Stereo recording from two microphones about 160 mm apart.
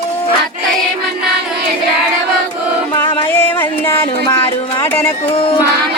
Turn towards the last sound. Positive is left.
turn(degrees=35)  # may be behind; listen again after turning